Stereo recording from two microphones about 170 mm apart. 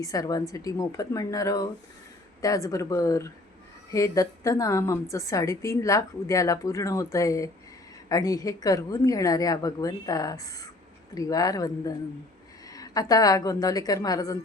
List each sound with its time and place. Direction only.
0.0 s a woman's voice: 20° left (ahead or behind)